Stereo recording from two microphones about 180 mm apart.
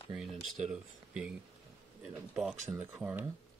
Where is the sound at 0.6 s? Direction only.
5° right (ahead or behind).